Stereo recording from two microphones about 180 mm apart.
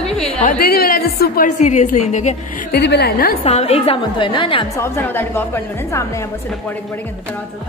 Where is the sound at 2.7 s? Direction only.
65° left (ahead or behind).